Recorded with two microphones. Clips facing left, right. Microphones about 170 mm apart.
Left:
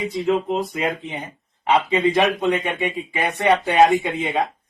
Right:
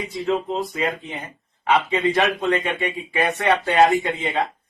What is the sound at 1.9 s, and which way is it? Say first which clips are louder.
Speech: left 2 dB; 20° left (ahead or behind).